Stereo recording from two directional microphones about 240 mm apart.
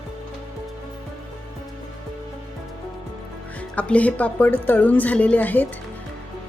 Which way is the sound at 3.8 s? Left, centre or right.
Centre.